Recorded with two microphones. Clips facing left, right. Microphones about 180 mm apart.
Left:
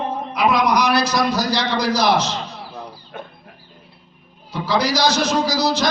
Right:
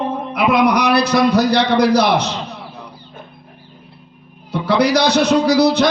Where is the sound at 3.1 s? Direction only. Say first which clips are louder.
Left 6 dB; 85° left.